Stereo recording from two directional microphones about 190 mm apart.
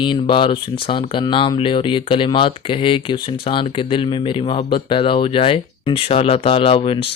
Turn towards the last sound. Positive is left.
turn(degrees=30)  # may be behind; listen again after turning